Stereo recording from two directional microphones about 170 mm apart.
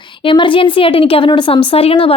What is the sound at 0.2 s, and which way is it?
A woman's voice, 30° left (ahead or behind).